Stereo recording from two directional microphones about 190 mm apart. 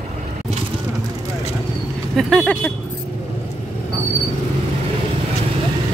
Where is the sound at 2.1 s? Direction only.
5° left (ahead or behind).